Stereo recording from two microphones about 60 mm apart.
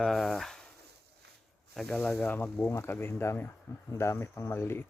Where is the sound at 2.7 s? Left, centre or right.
Left.